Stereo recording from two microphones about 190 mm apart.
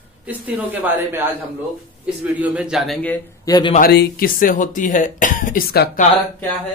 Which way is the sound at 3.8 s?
55° left (ahead or behind).